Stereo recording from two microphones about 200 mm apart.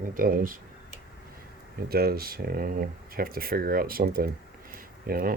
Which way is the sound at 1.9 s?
50° right (ahead or behind).